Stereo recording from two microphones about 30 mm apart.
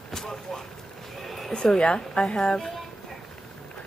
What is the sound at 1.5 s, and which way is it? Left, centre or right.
Speech, left.